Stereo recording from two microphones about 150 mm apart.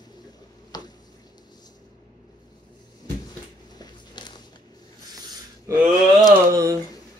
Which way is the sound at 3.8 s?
30° left (ahead or behind).